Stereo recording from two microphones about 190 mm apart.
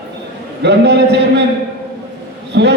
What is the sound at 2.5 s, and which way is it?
Speech, 65° right (ahead or behind).